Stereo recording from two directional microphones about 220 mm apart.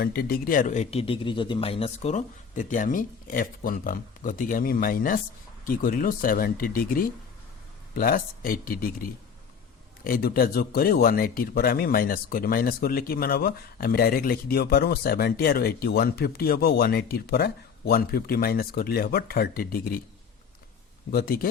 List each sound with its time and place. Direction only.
0.0 s a man's voice: 45° left (ahead or behind)
21.1 s speech: 40° left (ahead or behind)